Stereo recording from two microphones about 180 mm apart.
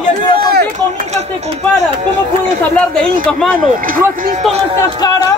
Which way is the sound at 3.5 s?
50° right (ahead or behind).